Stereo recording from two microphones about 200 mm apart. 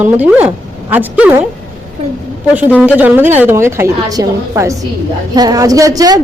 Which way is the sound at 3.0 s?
10° right (ahead or behind).